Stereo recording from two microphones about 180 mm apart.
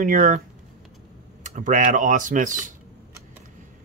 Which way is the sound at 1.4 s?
45° right (ahead or behind).